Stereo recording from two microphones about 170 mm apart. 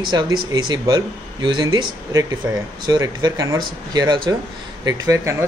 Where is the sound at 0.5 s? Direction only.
25° right (ahead or behind).